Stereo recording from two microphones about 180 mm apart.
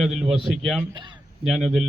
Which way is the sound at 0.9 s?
25° right (ahead or behind).